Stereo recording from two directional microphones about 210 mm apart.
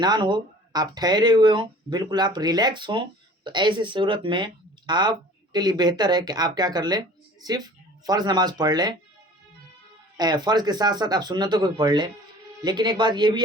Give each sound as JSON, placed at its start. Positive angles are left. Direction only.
{"t": 0.0, "sound": "speech", "side_deg": -20}
{"t": 10.2, "sound": "speech", "side_deg": -20}